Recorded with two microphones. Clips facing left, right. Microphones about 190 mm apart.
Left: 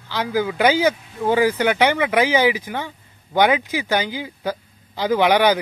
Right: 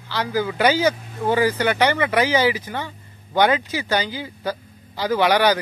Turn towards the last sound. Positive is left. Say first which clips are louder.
# left 2 dB
turn(degrees=15)  # may be behind; listen again after turning